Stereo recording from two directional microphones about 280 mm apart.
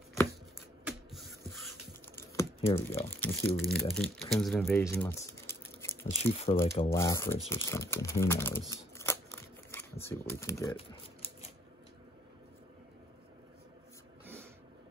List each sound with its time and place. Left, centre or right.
0.8 s a sound: centre
2.1 s typing: centre
3.0 s speech: centre
6.2 s speech: left
6.8 s speech: centre